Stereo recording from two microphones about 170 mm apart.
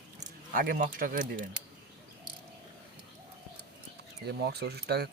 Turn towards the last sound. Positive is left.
turn(degrees=-70)  # may be behind; listen again after turning